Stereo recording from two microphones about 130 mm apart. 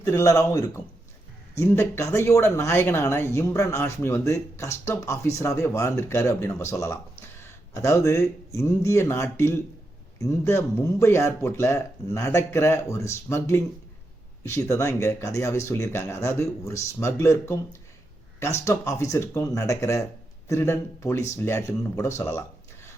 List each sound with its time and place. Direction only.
0.0 s speech: 25° left (ahead or behind)